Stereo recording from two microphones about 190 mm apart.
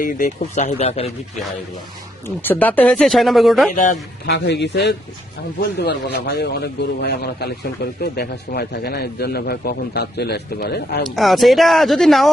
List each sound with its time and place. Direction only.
0.0 s speech: 40° left (ahead or behind)
2.2 s speech: 10° left (ahead or behind)
4.3 s speech: 60° left (ahead or behind)
11.1 s speech: centre (ahead or behind)